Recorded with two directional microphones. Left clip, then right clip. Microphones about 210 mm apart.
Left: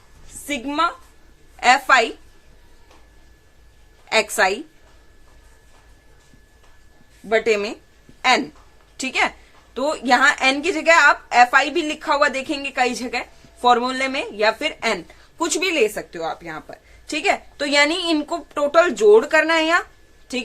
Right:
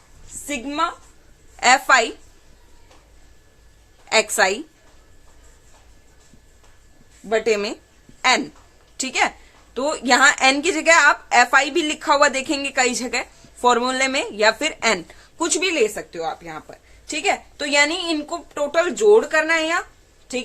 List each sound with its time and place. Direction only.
0.4 s speech: 5° left (ahead or behind)
1.5 s a woman's voice: 10° right (ahead or behind)
4.1 s a woman's voice: 10° right (ahead or behind)
7.3 s speech: centre (ahead or behind)
9.0 s a woman's voice: centre (ahead or behind)
15.4 s a woman's voice: centre (ahead or behind); by 19.8 s 25° left (ahead or behind)